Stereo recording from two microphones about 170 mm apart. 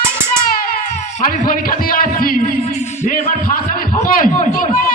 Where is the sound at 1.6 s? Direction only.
55° left (ahead or behind).